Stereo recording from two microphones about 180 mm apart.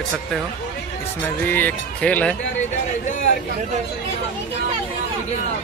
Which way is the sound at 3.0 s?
45° left (ahead or behind).